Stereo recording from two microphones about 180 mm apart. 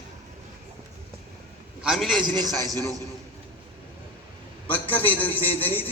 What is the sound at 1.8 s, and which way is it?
Speech, centre (ahead or behind).